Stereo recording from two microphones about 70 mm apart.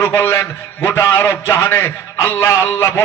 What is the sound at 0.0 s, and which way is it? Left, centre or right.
A man's voice, left.